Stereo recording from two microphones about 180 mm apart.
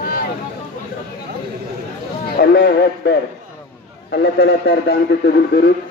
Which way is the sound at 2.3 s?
65° left (ahead or behind).